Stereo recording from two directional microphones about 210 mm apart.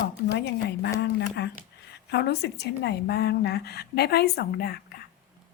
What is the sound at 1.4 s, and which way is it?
A woman's voice, 55° left (ahead or behind).